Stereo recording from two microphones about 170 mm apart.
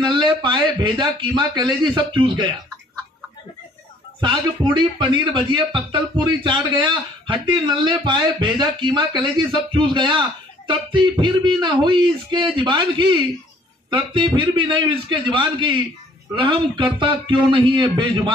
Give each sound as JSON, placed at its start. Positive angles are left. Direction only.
{"t": 0.0, "sound": "a man's voice", "side_deg": -25}
{"t": 4.2, "sound": "a man's voice", "side_deg": -25}